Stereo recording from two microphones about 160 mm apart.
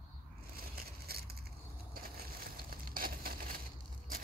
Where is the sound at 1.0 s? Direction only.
75° right (ahead or behind).